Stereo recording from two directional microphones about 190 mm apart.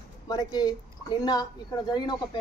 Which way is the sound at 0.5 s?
20° left (ahead or behind).